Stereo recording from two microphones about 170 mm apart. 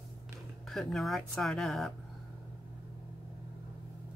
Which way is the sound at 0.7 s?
Centre (ahead or behind).